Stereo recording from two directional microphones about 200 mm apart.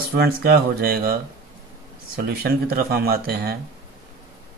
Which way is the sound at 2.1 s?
50° right (ahead or behind).